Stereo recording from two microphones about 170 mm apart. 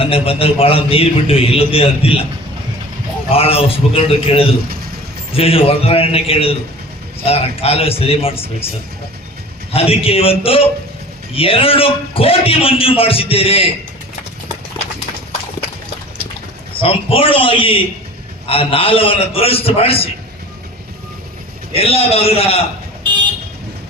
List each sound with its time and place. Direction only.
0.0 s a man's voice: 35° left (ahead or behind)
3.2 s a man's voice: 35° left (ahead or behind)
9.7 s a man's voice: 35° left (ahead or behind)
16.8 s a man's voice: 35° left (ahead or behind)
21.7 s a man's voice: 35° left (ahead or behind)